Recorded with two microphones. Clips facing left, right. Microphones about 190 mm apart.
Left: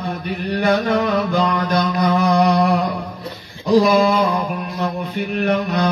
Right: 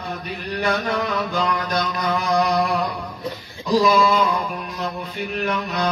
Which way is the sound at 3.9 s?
50° left (ahead or behind).